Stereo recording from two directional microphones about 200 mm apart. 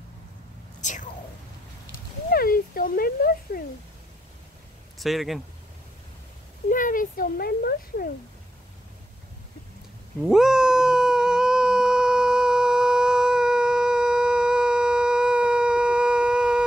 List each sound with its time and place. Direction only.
0.7 s whispering: 40° left (ahead or behind)
2.3 s speech: 45° left (ahead or behind)
4.9 s speech: centre (ahead or behind)
6.7 s a child's voice: 45° left (ahead or behind)
10.2 s cat: 5° right (ahead or behind)